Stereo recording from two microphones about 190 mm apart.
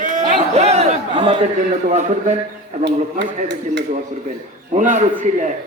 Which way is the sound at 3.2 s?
65° right (ahead or behind).